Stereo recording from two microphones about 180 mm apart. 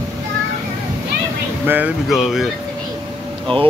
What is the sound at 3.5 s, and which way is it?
Speech, 30° right (ahead or behind).